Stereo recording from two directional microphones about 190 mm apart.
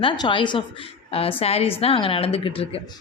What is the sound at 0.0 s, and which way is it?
A woman's voice, 25° left (ahead or behind).